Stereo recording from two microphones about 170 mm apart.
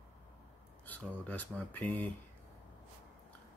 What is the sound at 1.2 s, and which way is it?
Speech, 10° left (ahead or behind).